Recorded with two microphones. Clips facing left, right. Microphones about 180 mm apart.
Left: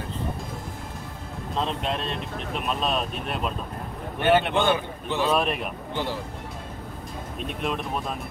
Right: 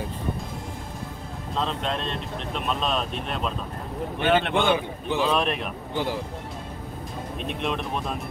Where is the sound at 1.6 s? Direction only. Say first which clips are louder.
Even; 5° left (ahead or behind).